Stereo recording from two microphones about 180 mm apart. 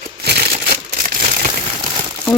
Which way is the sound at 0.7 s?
50° right (ahead or behind).